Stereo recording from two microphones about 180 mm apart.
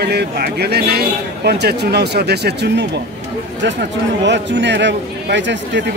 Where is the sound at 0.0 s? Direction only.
65° right (ahead or behind).